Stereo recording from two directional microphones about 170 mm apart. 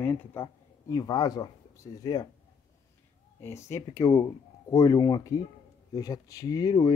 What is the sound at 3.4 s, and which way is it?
Speech, 15° left (ahead or behind).